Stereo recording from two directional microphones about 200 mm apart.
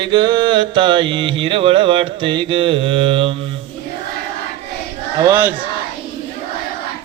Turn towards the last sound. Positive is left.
turn(degrees=-15)  # may be behind; listen again after turning